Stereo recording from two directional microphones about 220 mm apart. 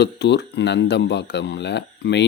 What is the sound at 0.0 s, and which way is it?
Speech, 50° left (ahead or behind).